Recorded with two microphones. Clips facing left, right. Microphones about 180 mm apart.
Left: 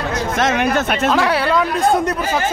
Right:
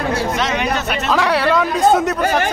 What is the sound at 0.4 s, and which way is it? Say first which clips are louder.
Speech: left 3 dB; 50° left (ahead or behind).